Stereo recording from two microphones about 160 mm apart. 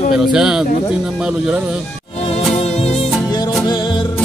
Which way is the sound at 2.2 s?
40° left (ahead or behind).